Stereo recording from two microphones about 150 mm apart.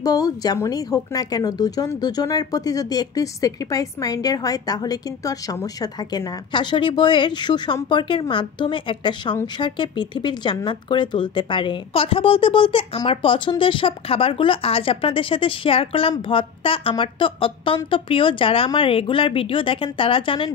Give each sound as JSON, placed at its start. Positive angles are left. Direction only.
{"t": 0.0, "sound": "speech", "side_deg": 25}